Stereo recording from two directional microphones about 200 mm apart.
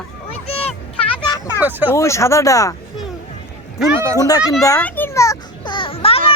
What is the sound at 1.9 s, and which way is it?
Speech, 15° left (ahead or behind).